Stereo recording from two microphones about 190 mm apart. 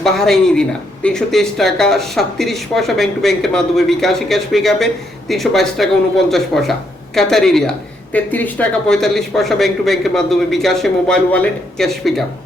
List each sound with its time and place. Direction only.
0.0 s a man's voice: centre (ahead or behind)